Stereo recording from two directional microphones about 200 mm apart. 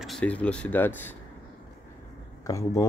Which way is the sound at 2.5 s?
15° left (ahead or behind).